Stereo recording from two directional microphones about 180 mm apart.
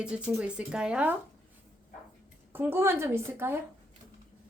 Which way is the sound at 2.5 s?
15° right (ahead or behind).